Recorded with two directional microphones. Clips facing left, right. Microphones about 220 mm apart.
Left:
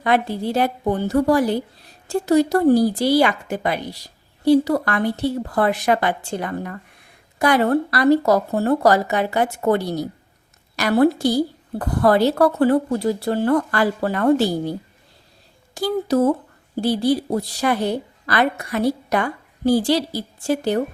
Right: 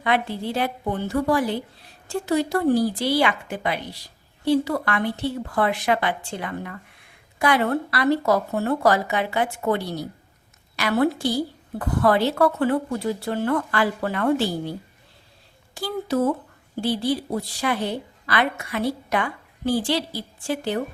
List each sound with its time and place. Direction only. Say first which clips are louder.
0.0 s a woman's voice: left 4 dB; 40° left (ahead or behind)